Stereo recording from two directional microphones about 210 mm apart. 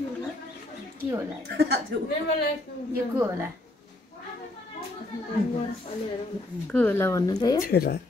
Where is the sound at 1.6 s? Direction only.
50° right (ahead or behind).